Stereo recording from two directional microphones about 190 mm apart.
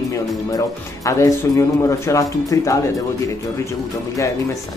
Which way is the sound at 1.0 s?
15° left (ahead or behind).